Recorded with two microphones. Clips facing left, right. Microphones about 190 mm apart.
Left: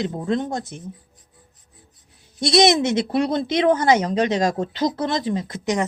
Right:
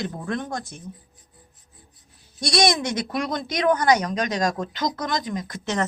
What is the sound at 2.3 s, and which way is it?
Speech, 20° left (ahead or behind).